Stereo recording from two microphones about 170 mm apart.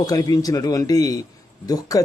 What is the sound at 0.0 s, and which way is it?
A man's voice, 20° left (ahead or behind).